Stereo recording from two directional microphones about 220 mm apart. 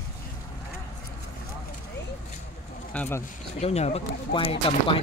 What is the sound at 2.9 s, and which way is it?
Speech, 10° left (ahead or behind).